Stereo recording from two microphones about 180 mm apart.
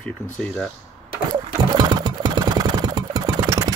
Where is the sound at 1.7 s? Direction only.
25° right (ahead or behind).